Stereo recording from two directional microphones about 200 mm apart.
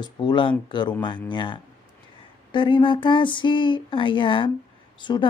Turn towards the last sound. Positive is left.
turn(degrees=25)  # may be behind; listen again after turning